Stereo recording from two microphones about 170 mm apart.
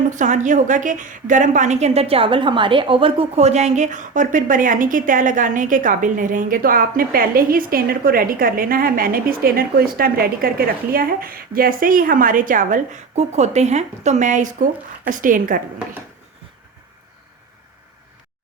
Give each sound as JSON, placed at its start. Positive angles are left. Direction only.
{"t": 0.1, "sound": "a woman's voice", "side_deg": -45}